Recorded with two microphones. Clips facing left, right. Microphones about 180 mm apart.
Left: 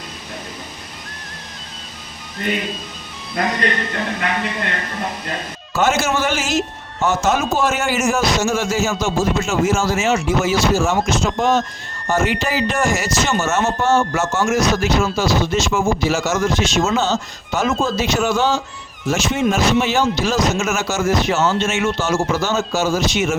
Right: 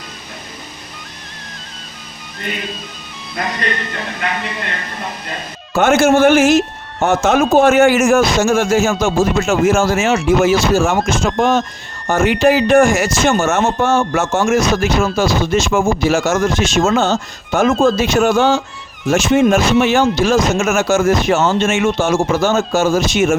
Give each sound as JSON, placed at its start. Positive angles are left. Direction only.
{"t": 5.7, "sound": "speech", "side_deg": -55}